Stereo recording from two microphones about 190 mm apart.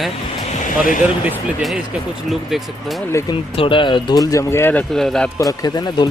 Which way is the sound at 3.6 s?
25° left (ahead or behind).